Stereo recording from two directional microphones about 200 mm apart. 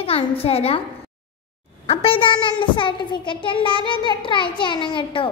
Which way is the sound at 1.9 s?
30° left (ahead or behind).